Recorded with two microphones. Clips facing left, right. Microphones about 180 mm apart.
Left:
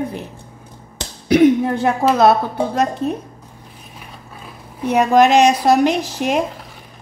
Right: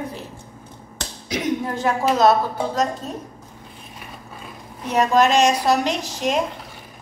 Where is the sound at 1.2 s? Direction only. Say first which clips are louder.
Left 12 dB; 60° left (ahead or behind).